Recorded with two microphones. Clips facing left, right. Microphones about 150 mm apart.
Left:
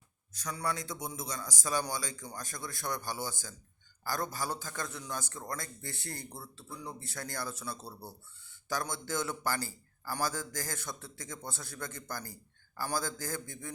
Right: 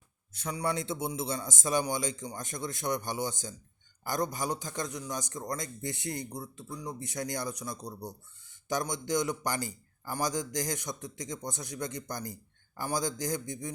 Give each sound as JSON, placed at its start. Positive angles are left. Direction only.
{"t": 0.3, "sound": "a man's voice", "side_deg": -25}